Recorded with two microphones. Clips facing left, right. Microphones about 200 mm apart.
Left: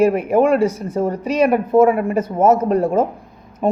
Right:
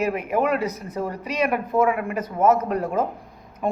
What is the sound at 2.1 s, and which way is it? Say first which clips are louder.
Speech: left 5 dB; 25° left (ahead or behind).